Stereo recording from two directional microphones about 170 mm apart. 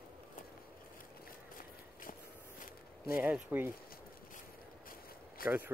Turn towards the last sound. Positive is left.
turn(degrees=60)  # may be behind; listen again after turning